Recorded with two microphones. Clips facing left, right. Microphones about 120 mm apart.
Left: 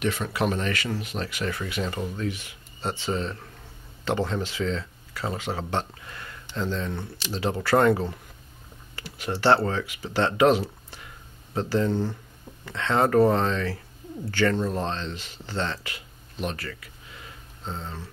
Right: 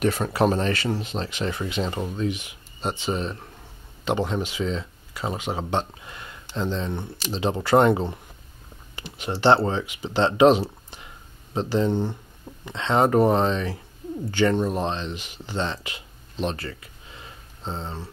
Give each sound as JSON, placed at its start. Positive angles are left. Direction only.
{"t": 0.0, "sound": "speech", "side_deg": -40}